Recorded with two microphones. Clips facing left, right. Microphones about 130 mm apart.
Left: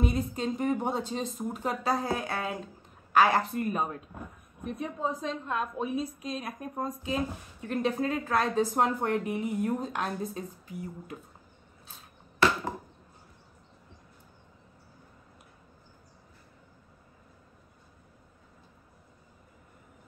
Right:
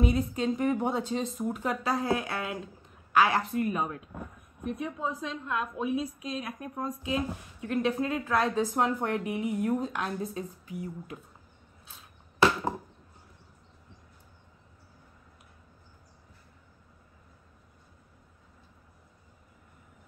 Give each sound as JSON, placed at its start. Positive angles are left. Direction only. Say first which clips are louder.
{"t": 0.0, "sound": "a woman's voice", "louder": "right 2 dB", "side_deg": 40}